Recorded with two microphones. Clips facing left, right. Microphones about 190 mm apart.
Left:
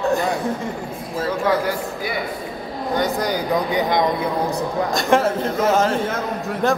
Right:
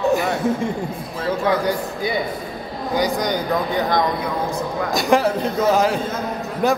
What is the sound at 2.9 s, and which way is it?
Speech, 5° left (ahead or behind).